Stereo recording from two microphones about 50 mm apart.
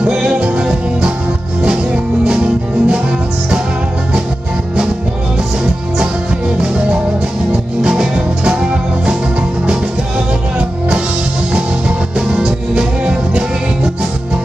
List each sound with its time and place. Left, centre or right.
0.0 s music: right
2.2 s music: right
7.8 s music: centre
12.3 s music: centre